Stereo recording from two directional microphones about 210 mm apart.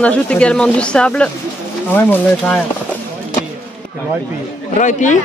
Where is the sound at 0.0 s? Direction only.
5° left (ahead or behind).